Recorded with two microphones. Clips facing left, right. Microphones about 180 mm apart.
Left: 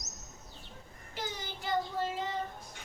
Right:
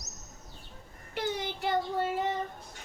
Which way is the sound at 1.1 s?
60° right (ahead or behind).